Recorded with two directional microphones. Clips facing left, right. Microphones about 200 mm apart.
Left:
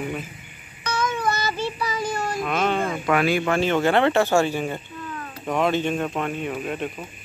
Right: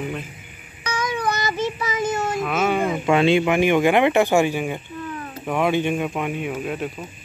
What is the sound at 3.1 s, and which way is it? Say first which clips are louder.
Speech: right 4 dB; 25° right (ahead or behind).